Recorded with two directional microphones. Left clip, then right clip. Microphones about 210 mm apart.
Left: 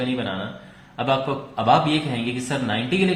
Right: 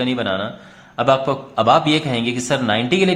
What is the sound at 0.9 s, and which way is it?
A man's voice, 40° right (ahead or behind).